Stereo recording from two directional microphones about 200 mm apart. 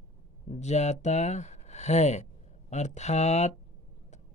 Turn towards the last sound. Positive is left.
turn(degrees=35)  # may be behind; listen again after turning